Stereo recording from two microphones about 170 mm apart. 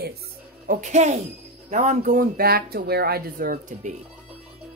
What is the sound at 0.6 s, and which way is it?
Speech, 45° right (ahead or behind).